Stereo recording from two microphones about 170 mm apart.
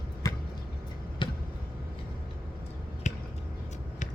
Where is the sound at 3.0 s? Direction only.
45° left (ahead or behind).